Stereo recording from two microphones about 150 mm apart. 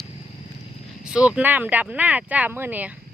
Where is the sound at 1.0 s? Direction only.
5° right (ahead or behind).